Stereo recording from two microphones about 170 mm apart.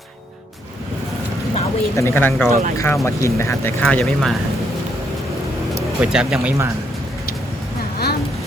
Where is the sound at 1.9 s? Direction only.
15° left (ahead or behind).